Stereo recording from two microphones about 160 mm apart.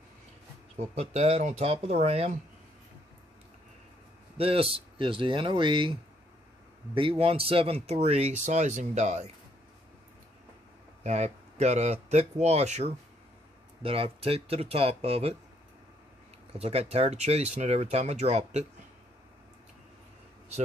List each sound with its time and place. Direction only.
0.7 s speech: 45° right (ahead or behind)
4.4 s speech: 35° right (ahead or behind)
11.1 s speech: 45° right (ahead or behind)
16.5 s speech: 40° right (ahead or behind)